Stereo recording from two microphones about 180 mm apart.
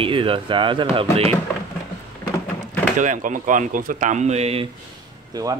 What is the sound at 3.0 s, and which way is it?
Speech, 45° right (ahead or behind).